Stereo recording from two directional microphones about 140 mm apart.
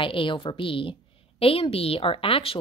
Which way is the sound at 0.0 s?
40° left (ahead or behind).